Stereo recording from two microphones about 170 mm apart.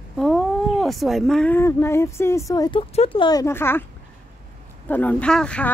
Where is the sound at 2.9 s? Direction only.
35° left (ahead or behind); by 3.8 s 15° left (ahead or behind).